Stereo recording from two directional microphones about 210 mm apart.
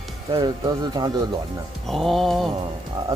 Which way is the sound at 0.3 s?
20° right (ahead or behind).